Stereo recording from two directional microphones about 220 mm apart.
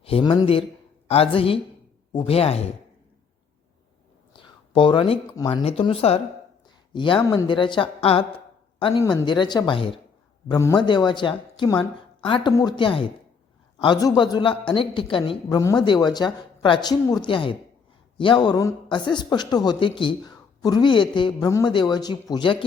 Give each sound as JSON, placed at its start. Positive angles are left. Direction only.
{"t": 0.0, "sound": "speech", "side_deg": 25}
{"t": 4.4, "sound": "speech", "side_deg": 20}